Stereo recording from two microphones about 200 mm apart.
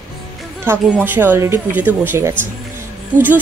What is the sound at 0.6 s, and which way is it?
Speech, 10° right (ahead or behind).